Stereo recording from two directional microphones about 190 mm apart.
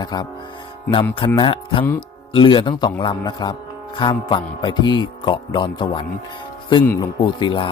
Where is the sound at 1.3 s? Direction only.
25° left (ahead or behind).